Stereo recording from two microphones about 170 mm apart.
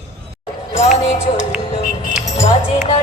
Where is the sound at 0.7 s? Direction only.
40° left (ahead or behind).